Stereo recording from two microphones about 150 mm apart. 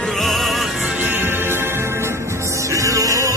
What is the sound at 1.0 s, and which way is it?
Music, 15° right (ahead or behind).